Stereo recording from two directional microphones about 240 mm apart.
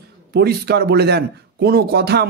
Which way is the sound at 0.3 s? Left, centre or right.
Right.